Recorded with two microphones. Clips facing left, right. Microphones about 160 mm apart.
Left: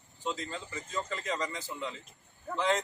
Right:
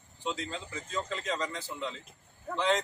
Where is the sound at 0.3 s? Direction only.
Centre (ahead or behind).